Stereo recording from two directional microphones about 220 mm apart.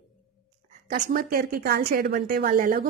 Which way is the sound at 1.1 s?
40° right (ahead or behind).